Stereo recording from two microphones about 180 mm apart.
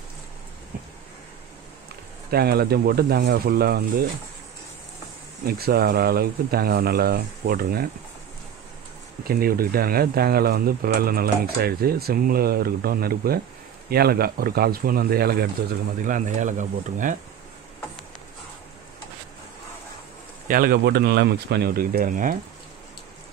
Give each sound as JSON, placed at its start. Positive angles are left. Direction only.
{"t": 2.3, "sound": "speech", "side_deg": -60}
{"t": 5.4, "sound": "speech", "side_deg": -60}
{"t": 9.2, "sound": "speech", "side_deg": -55}
{"t": 16.0, "sound": "speech", "side_deg": -45}
{"t": 20.4, "sound": "speech", "side_deg": -50}